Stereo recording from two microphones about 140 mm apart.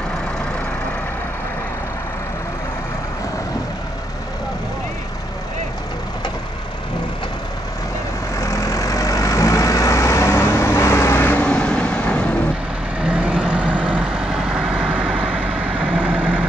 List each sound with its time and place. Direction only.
8.4 s vehicle: 20° left (ahead or behind)
13.0 s vehicle: 5° right (ahead or behind)